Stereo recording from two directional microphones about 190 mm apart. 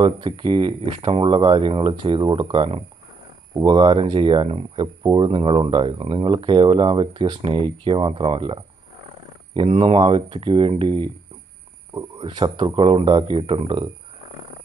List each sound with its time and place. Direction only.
0.0 s speech: 25° right (ahead or behind)